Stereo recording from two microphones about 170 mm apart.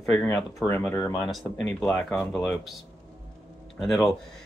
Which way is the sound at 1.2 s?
Centre (ahead or behind).